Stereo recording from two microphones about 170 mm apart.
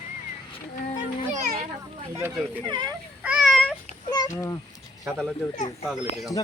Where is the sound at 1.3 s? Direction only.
45° right (ahead or behind).